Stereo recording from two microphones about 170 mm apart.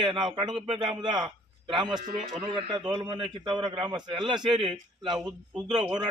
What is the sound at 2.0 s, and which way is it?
Speech, 45° right (ahead or behind).